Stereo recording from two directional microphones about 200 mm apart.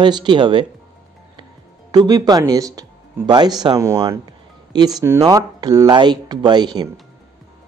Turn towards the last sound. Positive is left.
turn(degrees=-20)  # may be behind; listen again after turning